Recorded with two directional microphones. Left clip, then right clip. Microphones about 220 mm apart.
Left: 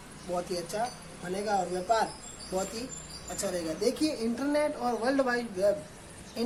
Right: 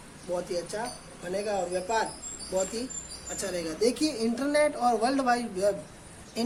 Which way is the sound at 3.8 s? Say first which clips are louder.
Right 3 dB; 30° right (ahead or behind).